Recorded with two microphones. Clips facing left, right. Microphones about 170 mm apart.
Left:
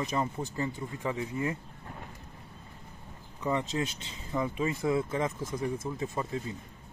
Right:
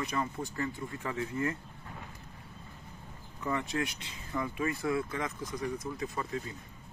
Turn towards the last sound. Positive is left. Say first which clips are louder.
# left 2 dB
turn(degrees=25)  # may be behind; listen again after turning